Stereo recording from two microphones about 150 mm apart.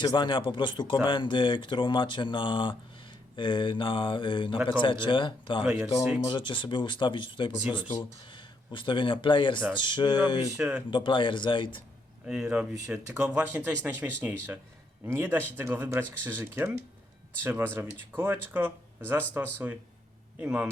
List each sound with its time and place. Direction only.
0.0 s speech: 30° left (ahead or behind)
10.6 s speech: 10° right (ahead or behind)
10.9 s speech: 35° left (ahead or behind)
12.2 s speech: 5° right (ahead or behind)